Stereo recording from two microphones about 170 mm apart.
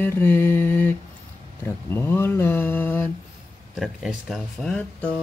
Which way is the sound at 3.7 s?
5° right (ahead or behind).